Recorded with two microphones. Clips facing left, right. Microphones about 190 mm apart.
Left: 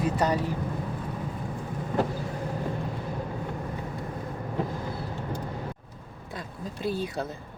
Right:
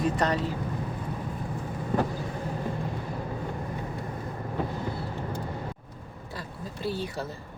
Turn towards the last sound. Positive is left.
turn(degrees=20)  # may be behind; listen again after turning